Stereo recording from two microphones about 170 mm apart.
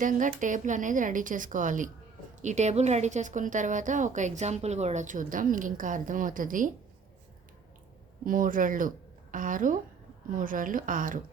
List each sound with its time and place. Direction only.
0.0 s a woman's voice: 50° right (ahead or behind)
8.2 s a woman's voice: 55° right (ahead or behind)